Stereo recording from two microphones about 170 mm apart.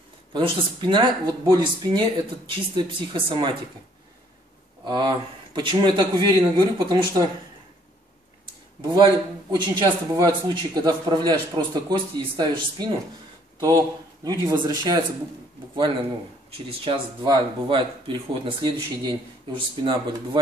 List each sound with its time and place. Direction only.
0.3 s speech: 30° right (ahead or behind)
4.8 s speech: 30° right (ahead or behind)
8.8 s speech: 25° right (ahead or behind)
16.5 s speech: 30° right (ahead or behind)